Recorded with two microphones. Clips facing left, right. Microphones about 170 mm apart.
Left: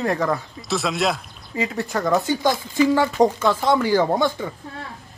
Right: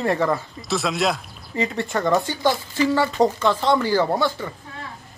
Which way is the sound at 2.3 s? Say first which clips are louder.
Left 1 dB; 15° left (ahead or behind).